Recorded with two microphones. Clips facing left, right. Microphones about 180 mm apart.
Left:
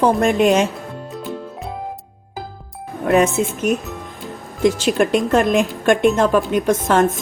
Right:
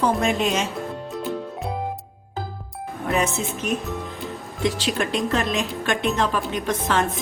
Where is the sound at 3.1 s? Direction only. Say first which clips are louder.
Left 8 dB; 55° left (ahead or behind).